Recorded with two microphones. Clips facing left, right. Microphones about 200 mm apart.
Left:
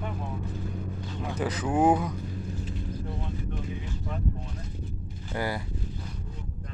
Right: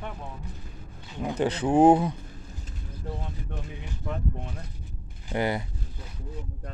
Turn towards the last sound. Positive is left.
turn(degrees=-20)  # may be behind; listen again after turning